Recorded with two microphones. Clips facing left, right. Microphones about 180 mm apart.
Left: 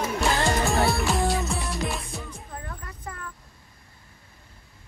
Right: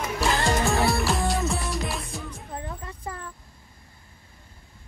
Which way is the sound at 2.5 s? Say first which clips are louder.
Right 4 dB; 25° right (ahead or behind).